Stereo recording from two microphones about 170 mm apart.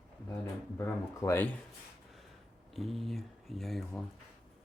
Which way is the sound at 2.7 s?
Centre (ahead or behind).